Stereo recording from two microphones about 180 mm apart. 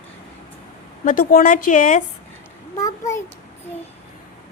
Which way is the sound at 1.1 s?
45° left (ahead or behind).